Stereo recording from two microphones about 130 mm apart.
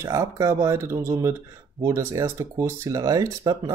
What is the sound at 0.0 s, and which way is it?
Speech, 25° right (ahead or behind).